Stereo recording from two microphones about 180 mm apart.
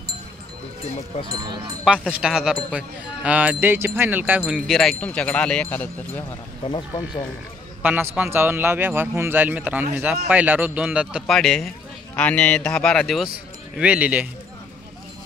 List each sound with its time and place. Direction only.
1.1 s speech: 30° left (ahead or behind)
1.9 s wind chime: 5° right (ahead or behind)
6.7 s speech: 25° left (ahead or behind)
7.8 s a man's voice: 10° right (ahead or behind)
12.2 s wind chime: 10° left (ahead or behind)
13.7 s a man's voice: 5° right (ahead or behind)